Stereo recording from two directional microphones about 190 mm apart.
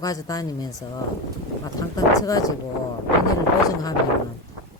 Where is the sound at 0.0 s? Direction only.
20° left (ahead or behind).